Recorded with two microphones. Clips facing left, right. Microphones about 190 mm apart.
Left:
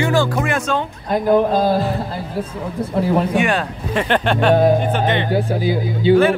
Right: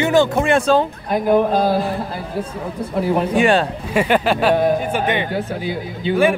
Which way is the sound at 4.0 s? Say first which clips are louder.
Right 1 dB; 5° right (ahead or behind).